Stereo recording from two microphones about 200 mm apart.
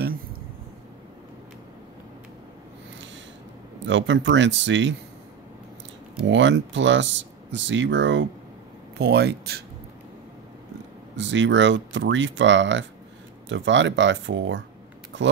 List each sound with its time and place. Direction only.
3.8 s speech: 65° right (ahead or behind)
6.2 s speech: 65° right (ahead or behind)
11.1 s speech: 65° right (ahead or behind)